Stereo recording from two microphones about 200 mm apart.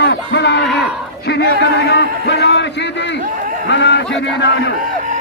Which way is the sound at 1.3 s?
55° left (ahead or behind).